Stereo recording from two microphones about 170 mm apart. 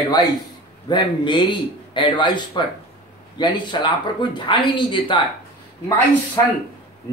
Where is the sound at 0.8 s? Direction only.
25° left (ahead or behind).